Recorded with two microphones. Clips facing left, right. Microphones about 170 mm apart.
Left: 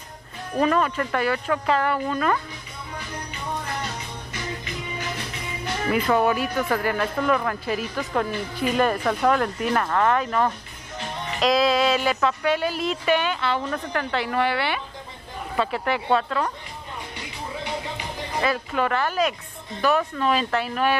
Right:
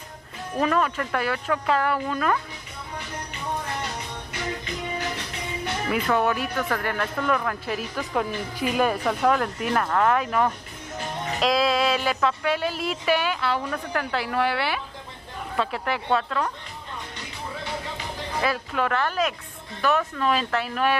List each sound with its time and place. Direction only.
0.6 s speech: centre (ahead or behind)
5.9 s speech: centre (ahead or behind)
18.4 s speech: centre (ahead or behind)